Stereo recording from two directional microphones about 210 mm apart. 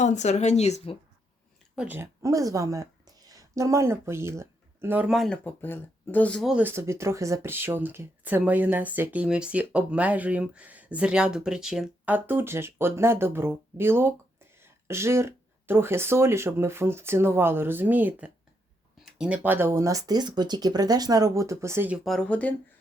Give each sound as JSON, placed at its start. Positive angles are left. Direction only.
{"t": 0.0, "sound": "speech", "side_deg": 35}
{"t": 1.7, "sound": "a woman's voice", "side_deg": -5}